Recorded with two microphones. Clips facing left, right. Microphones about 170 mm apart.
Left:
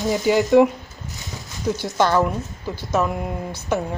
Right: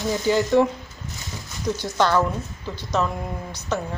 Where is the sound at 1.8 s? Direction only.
15° left (ahead or behind).